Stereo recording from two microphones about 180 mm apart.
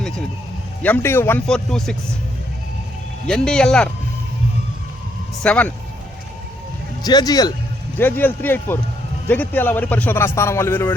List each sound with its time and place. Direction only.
0.8 s a man's voice: 10° left (ahead or behind)
3.2 s speech: 5° left (ahead or behind)
5.4 s a man's voice: 10° left (ahead or behind)
7.0 s speech: 20° left (ahead or behind)
7.9 s a man's voice: 10° left (ahead or behind)